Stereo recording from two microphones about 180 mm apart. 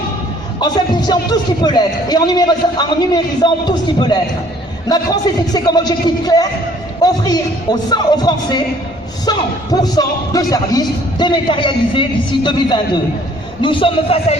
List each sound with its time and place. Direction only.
0.6 s speech: 25° left (ahead or behind)